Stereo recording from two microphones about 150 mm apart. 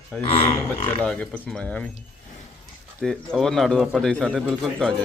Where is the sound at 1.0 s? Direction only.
5° left (ahead or behind).